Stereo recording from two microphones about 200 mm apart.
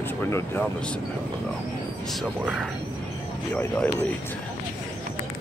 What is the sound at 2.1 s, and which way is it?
Speech, 5° right (ahead or behind).